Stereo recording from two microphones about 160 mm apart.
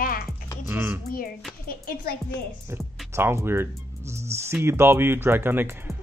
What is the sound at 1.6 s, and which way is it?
Speech, 65° left (ahead or behind).